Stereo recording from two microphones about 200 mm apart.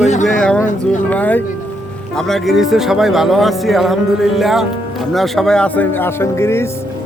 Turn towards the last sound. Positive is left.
turn(degrees=15)  # may be behind; listen again after turning